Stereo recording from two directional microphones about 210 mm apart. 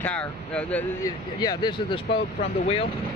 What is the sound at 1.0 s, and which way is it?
Speech, 20° left (ahead or behind).